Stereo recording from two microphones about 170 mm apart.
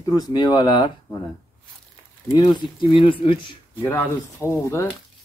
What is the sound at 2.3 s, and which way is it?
Speech, 30° left (ahead or behind).